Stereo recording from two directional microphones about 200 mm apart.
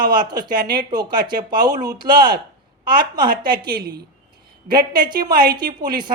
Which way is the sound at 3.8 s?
50° right (ahead or behind).